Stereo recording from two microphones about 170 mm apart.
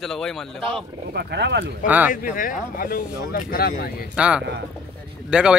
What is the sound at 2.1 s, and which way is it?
Speech, 50° left (ahead or behind).